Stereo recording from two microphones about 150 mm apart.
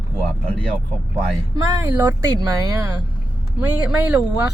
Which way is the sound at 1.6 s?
25° right (ahead or behind).